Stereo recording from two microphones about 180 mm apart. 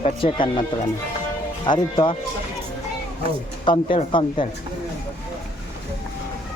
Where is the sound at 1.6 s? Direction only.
25° left (ahead or behind).